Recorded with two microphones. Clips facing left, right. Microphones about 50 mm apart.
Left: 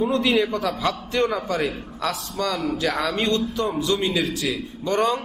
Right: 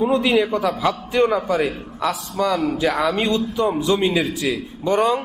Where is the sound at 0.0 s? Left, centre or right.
Centre.